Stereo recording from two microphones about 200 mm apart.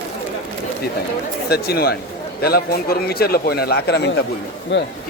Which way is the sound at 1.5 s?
50° left (ahead or behind).